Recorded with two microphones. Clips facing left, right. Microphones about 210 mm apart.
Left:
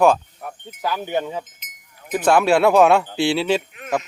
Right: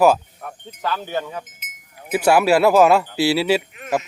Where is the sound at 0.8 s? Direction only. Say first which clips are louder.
Left 2 dB; 10° left (ahead or behind).